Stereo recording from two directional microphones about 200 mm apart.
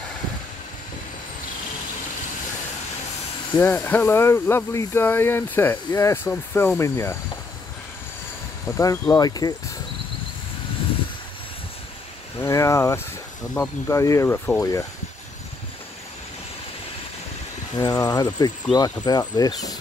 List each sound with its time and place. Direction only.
3.5 s speech: 10° left (ahead or behind)
8.7 s speech: 15° left (ahead or behind)
12.4 s speech: 15° left (ahead or behind)
17.7 s speech: 15° left (ahead or behind)